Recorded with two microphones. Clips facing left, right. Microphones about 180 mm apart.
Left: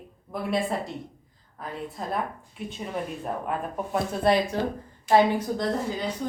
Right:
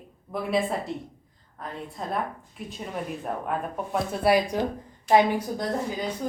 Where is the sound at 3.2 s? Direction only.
Centre (ahead or behind).